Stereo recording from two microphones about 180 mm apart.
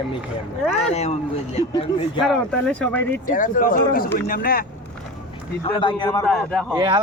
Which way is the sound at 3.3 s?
45° left (ahead or behind).